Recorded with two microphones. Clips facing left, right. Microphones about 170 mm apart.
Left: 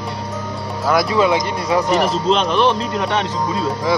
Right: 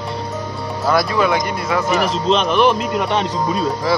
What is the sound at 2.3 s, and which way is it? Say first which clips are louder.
Speech: right 2 dB; centre (ahead or behind).